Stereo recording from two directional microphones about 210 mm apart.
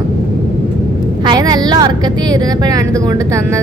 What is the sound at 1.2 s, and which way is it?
Speech, 20° right (ahead or behind).